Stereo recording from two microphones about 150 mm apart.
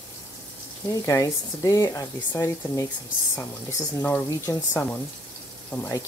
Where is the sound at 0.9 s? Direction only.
20° left (ahead or behind).